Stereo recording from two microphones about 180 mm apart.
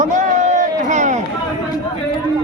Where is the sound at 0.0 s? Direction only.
45° right (ahead or behind).